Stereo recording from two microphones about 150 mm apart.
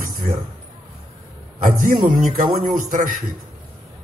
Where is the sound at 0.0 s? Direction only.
70° right (ahead or behind).